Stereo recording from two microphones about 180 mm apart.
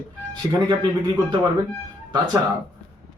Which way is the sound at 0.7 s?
25° right (ahead or behind).